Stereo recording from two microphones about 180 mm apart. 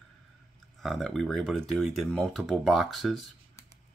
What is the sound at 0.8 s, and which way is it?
Speech, centre (ahead or behind).